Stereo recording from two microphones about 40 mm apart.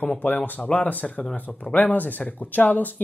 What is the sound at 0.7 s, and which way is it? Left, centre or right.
Speech, left.